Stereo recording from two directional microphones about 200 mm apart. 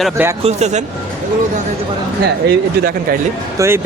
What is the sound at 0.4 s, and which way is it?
Speech, 35° right (ahead or behind).